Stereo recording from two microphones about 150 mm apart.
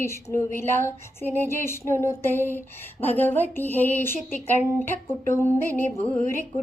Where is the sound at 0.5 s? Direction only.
15° left (ahead or behind).